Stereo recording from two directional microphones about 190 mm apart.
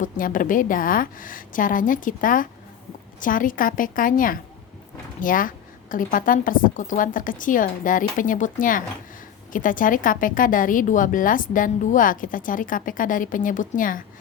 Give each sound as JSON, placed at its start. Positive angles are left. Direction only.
{"t": 0.0, "sound": "a woman's voice", "side_deg": 45}